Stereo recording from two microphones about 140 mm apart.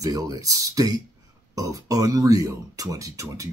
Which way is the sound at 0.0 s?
25° right (ahead or behind).